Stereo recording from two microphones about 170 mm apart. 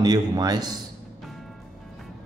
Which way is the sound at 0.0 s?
20° right (ahead or behind).